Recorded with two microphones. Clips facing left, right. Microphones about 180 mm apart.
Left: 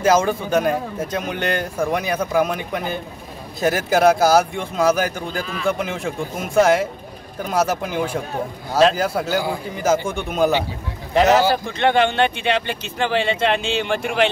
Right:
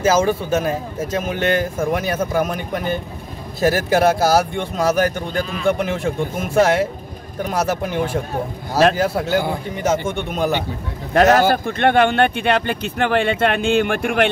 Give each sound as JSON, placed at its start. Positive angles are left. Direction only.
{"t": 0.0, "sound": "a man's voice", "side_deg": -5}
{"t": 11.1, "sound": "speech", "side_deg": -55}